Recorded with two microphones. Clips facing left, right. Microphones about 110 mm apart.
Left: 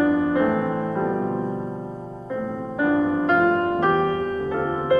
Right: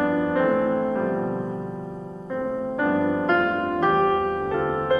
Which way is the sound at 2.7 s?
15° left (ahead or behind).